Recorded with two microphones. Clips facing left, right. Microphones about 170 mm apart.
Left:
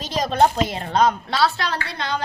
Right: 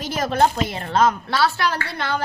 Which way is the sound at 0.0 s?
20° left (ahead or behind).